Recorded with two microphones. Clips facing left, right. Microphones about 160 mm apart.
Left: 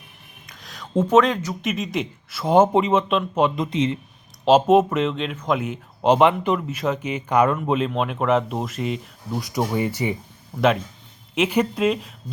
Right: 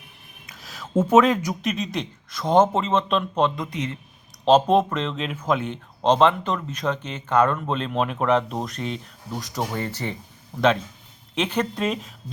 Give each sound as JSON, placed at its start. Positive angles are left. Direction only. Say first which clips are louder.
{"t": 0.4, "sound": "a sound", "louder": "right 1 dB", "side_deg": -5}
{"t": 1.1, "sound": "speech", "louder": "even", "side_deg": -5}
{"t": 1.6, "sound": "speech", "louder": "left 1 dB", "side_deg": 0}
{"t": 3.5, "sound": "speech", "louder": "left 7 dB", "side_deg": 25}
{"t": 4.4, "sound": "speech", "louder": "left 2 dB", "side_deg": 5}